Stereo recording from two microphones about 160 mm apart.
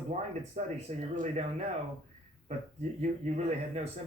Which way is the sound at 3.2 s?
45° right (ahead or behind).